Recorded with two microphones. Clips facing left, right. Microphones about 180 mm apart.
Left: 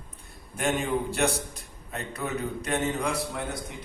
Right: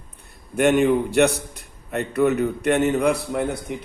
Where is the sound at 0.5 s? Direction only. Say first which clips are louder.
Right 10 dB; 65° right (ahead or behind).